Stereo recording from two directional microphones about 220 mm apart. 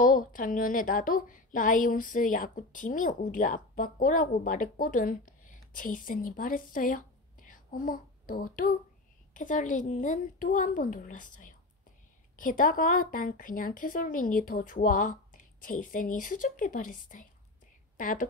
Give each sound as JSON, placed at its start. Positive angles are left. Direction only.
{"t": 0.0, "sound": "a woman's voice", "side_deg": 40}